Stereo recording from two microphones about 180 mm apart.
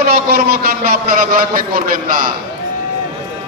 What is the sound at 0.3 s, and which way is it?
A man's voice, 55° right (ahead or behind).